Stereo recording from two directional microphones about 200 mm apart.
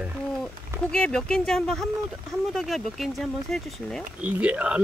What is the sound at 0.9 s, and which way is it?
Speech, 5° left (ahead or behind).